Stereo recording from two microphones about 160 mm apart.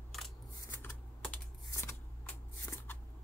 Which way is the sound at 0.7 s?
15° left (ahead or behind).